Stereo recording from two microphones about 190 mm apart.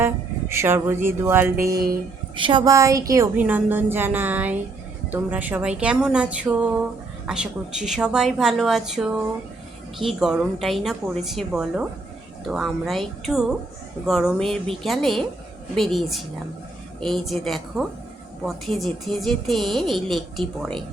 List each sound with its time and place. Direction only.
0.0 s speech: 15° right (ahead or behind)
1.8 s a woman's voice: 25° right (ahead or behind); by 20.8 s centre (ahead or behind)